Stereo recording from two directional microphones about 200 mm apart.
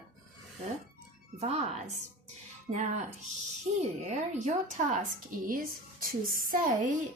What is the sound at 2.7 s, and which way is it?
A woman's voice, 35° right (ahead or behind).